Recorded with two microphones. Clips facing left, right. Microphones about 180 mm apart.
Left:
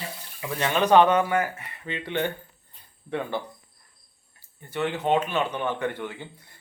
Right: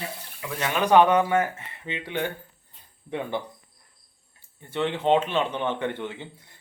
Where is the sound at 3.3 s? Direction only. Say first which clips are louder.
Right 1 dB; 20° right (ahead or behind).